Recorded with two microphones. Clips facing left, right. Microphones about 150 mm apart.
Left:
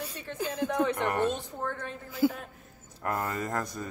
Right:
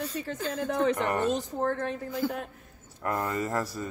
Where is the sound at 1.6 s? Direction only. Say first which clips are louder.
Right 6 dB; 40° right (ahead or behind).